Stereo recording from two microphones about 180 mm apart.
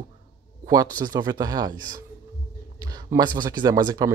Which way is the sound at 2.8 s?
20° right (ahead or behind).